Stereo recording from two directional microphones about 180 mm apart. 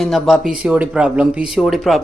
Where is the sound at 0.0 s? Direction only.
Centre (ahead or behind).